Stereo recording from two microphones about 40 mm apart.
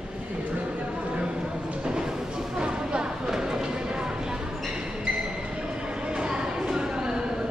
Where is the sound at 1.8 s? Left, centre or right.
Right.